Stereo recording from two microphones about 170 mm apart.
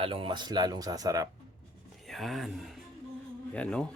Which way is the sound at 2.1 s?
Centre (ahead or behind).